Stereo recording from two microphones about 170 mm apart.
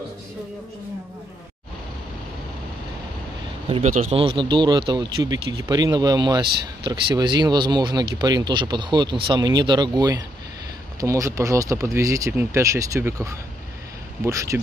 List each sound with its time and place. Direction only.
3.6 s speech: 35° right (ahead or behind); by 14.6 s 20° right (ahead or behind)